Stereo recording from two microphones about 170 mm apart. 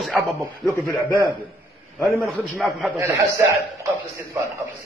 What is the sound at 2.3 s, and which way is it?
Speech, centre (ahead or behind).